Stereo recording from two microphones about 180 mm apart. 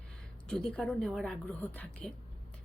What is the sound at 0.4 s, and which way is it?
A woman's voice, 5° left (ahead or behind).